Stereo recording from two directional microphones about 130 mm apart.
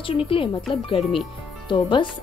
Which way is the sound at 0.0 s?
45° left (ahead or behind).